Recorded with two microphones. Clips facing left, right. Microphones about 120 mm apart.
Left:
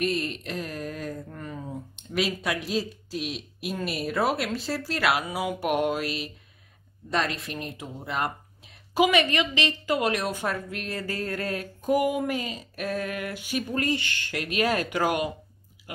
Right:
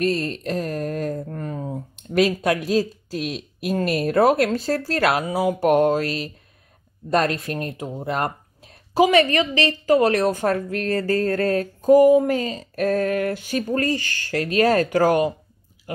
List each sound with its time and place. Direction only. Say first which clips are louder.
0.0 s speech: right 5 dB; 35° right (ahead or behind)
3.1 s speech: right 5 dB; centre (ahead or behind)
3.6 s speech: right 9 dB; 50° right (ahead or behind)
5.9 s mantra: right 6 dB; 10° left (ahead or behind)
7.4 s a woman's voice: right 8 dB; 50° right (ahead or behind)